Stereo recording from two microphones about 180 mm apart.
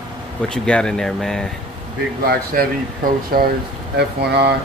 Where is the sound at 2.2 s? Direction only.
55° right (ahead or behind).